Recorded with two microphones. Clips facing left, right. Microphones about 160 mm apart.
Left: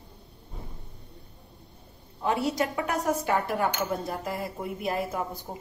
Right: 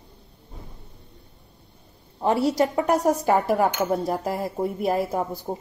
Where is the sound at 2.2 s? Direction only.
35° right (ahead or behind).